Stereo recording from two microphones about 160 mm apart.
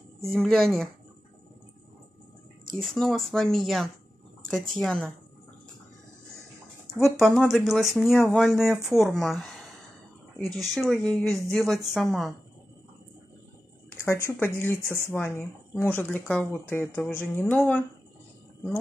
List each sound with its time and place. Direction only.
0.2 s speech: 5° left (ahead or behind)
2.8 s speech: 5° left (ahead or behind)
7.0 s speech: centre (ahead or behind)
14.2 s speech: 15° left (ahead or behind)